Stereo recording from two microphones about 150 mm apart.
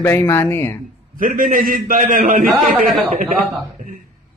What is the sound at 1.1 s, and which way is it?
A man's voice, 70° right (ahead or behind).